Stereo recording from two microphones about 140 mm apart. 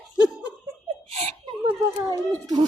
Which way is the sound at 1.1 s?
45° right (ahead or behind).